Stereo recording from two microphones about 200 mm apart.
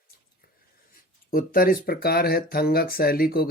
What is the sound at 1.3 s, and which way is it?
Speech, 45° left (ahead or behind).